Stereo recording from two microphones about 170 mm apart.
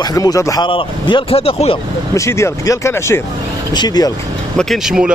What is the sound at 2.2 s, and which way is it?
Speech, 15° left (ahead or behind).